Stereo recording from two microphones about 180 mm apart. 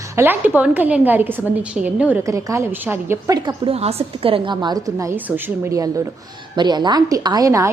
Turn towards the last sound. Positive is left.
turn(degrees=-20)  # may be behind; listen again after turning